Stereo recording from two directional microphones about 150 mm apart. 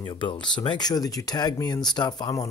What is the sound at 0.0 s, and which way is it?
Speech, 30° left (ahead or behind).